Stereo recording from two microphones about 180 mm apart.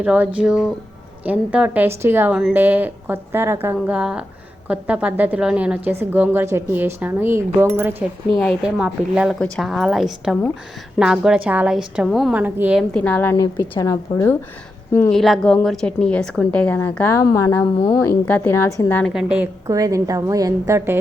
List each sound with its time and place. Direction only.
0.0 s a woman's voice: 5° right (ahead or behind)
8.3 s a woman's voice: centre (ahead or behind)
12.9 s a woman's voice: 5° left (ahead or behind)
15.1 s a woman's voice: centre (ahead or behind)
19.1 s a woman's voice: 5° right (ahead or behind)
19.6 s a woman's voice: 20° right (ahead or behind)